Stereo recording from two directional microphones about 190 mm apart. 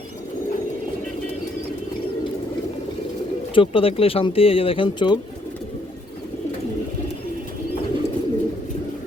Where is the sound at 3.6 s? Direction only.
30° left (ahead or behind).